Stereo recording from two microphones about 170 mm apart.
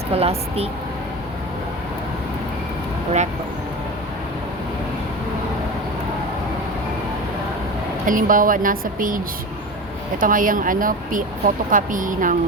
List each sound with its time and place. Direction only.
0.1 s speech: 35° right (ahead or behind)
8.0 s speech: 50° right (ahead or behind)